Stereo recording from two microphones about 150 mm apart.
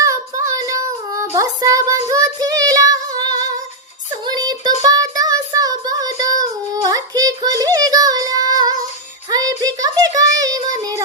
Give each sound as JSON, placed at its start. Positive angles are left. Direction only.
{"t": 0.0, "sound": "child singing", "side_deg": -20}